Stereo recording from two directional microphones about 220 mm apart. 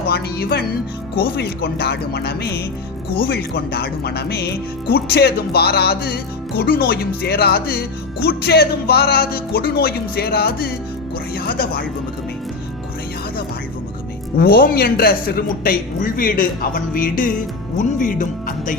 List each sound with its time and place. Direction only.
0.1 s speech: 45° left (ahead or behind)
14.3 s a man's voice: 45° left (ahead or behind)